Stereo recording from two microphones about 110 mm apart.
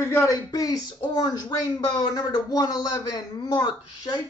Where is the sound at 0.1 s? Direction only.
30° left (ahead or behind).